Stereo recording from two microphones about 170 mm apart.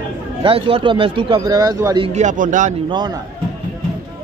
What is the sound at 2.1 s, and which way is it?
Speech, 50° right (ahead or behind).